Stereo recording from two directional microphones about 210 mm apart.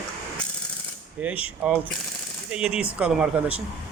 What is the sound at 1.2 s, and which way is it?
Speech, 5° right (ahead or behind).